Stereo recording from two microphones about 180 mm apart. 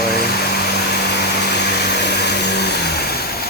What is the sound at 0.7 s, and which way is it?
Vacuum cleaner, 65° left (ahead or behind).